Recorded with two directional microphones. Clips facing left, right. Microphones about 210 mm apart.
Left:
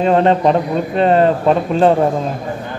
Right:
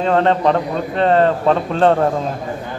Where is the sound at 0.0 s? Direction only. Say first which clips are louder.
Left 3 dB; 15° left (ahead or behind).